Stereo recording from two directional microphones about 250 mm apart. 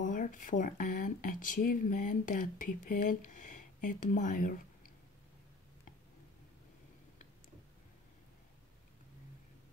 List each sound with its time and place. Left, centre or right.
0.0 s speech: left